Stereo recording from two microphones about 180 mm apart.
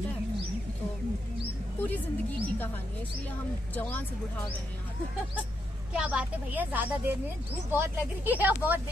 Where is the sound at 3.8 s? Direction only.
10° left (ahead or behind).